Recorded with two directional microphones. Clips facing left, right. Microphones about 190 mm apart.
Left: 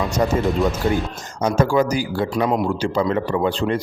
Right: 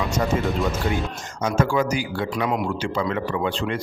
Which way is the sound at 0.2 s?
35° left (ahead or behind).